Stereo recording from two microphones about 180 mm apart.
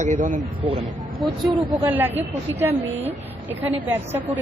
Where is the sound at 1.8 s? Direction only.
10° right (ahead or behind).